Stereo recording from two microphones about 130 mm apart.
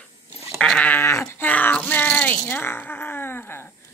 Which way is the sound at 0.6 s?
10° left (ahead or behind).